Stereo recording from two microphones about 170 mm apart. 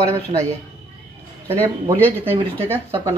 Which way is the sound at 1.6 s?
15° right (ahead or behind).